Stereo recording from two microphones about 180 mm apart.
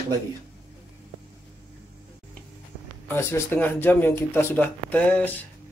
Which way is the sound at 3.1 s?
15° left (ahead or behind).